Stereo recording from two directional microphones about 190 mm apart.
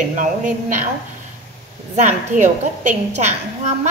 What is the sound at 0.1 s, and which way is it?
Speech, 40° right (ahead or behind).